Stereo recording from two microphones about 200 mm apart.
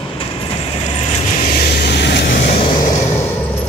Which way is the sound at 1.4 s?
45° left (ahead or behind).